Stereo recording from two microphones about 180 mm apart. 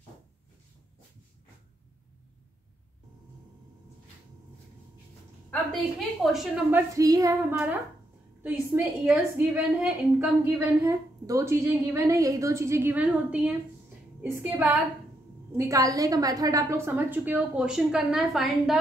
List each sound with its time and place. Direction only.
5.5 s a woman's voice: 5° left (ahead or behind)
7.0 s child singing: 20° right (ahead or behind)
9.0 s a woman's voice: 5° right (ahead or behind)